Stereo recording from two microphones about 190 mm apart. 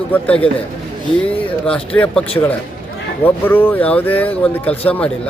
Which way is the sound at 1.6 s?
5° left (ahead or behind).